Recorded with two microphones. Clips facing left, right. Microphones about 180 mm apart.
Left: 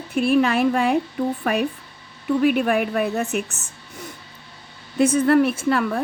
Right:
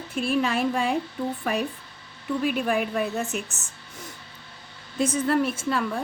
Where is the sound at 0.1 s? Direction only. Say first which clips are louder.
Left 6 dB; 65° left (ahead or behind).